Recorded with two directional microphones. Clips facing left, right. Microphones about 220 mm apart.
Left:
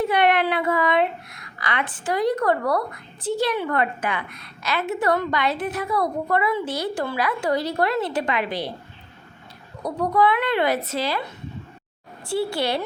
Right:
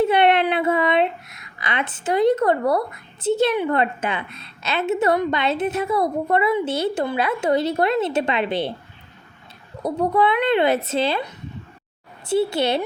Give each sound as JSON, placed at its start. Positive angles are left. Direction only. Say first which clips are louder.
{"t": 0.0, "sound": "speech", "louder": "right 3 dB", "side_deg": -25}
{"t": 9.8, "sound": "speech", "louder": "right 1 dB", "side_deg": -25}
{"t": 12.3, "sound": "speech", "louder": "right 4 dB", "side_deg": -20}